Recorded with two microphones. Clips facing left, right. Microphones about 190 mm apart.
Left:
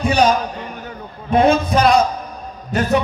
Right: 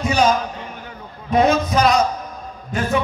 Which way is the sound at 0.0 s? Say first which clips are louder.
Left 2 dB; 60° left (ahead or behind).